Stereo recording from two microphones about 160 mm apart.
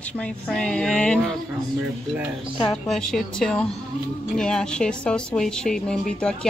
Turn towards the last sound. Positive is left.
turn(degrees=5)  # may be behind; listen again after turning